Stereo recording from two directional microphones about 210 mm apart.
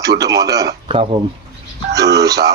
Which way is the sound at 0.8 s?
30° right (ahead or behind).